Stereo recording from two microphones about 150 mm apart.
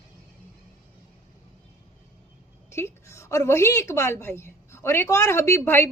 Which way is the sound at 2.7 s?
20° left (ahead or behind).